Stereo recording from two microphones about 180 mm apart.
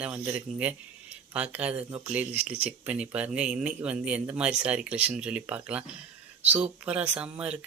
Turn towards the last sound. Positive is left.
turn(degrees=-5)  # may be behind; listen again after turning